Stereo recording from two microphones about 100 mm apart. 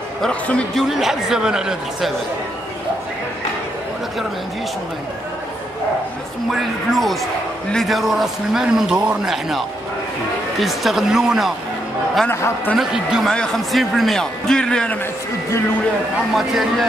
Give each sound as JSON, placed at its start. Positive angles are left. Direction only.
{"t": 0.2, "sound": "speech", "side_deg": 10}
{"t": 0.8, "sound": "a man's voice", "side_deg": -5}
{"t": 6.5, "sound": "a man's voice", "side_deg": 0}
{"t": 12.3, "sound": "a man's voice", "side_deg": 25}
{"t": 12.7, "sound": "a man's voice", "side_deg": -5}
{"t": 16.3, "sound": "a man's voice", "side_deg": 0}